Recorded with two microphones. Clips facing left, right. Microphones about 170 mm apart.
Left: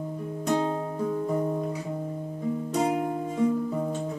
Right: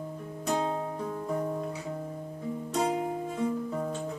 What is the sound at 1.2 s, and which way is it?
Music, 15° left (ahead or behind).